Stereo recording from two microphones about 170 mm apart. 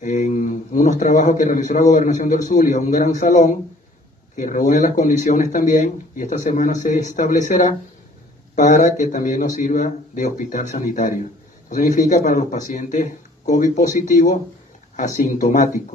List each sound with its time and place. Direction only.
0.0 s a man's voice: 45° left (ahead or behind)